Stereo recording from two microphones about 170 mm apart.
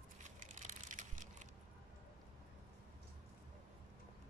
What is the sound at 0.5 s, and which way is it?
Crushing, 50° right (ahead or behind).